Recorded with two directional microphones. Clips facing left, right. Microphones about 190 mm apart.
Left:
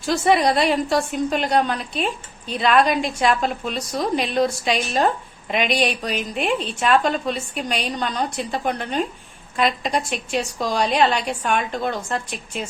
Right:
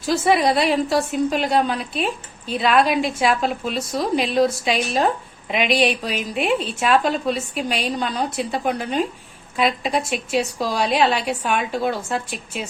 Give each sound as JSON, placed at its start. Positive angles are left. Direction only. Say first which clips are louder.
{"t": 0.0, "sound": "a woman's voice", "louder": "even", "side_deg": 0}